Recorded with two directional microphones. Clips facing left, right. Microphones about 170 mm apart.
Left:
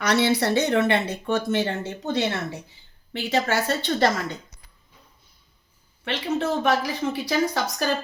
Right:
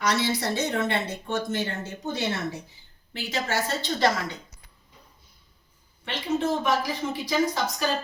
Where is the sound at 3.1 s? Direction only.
60° left (ahead or behind).